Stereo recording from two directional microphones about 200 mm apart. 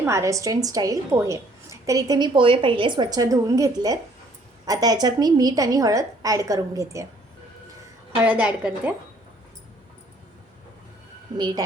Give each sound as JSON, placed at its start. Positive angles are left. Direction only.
{"t": 0.0, "sound": "a woman's voice", "side_deg": -15}
{"t": 8.2, "sound": "a woman's voice", "side_deg": -5}
{"t": 11.3, "sound": "a woman's voice", "side_deg": -20}